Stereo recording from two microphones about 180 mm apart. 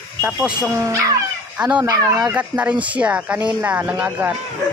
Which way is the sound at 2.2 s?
5° right (ahead or behind).